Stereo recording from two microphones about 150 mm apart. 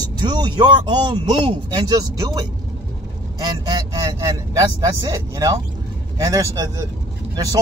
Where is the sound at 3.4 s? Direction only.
25° right (ahead or behind).